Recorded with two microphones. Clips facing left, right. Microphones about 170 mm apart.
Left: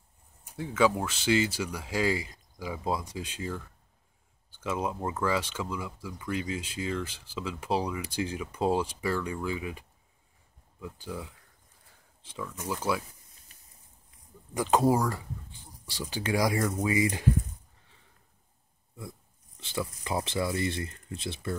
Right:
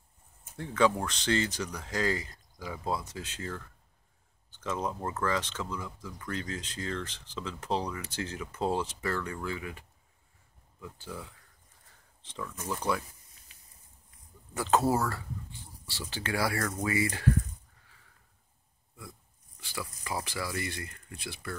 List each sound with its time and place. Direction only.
0.6 s speech: 5° left (ahead or behind)
14.5 s speech: 15° left (ahead or behind)
18.9 s speech: 20° left (ahead or behind)